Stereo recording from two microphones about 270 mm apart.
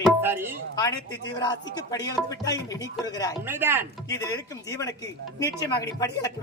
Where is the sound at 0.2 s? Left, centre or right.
Centre.